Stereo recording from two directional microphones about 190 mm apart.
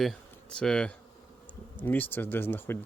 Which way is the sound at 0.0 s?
Centre (ahead or behind).